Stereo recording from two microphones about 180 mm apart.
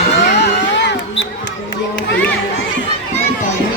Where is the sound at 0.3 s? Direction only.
70° left (ahead or behind).